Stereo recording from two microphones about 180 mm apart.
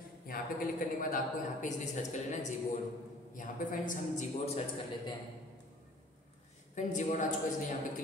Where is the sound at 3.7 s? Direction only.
45° left (ahead or behind).